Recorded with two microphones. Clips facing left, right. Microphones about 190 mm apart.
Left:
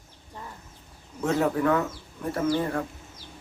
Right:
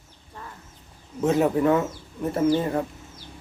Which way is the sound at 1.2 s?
20° right (ahead or behind).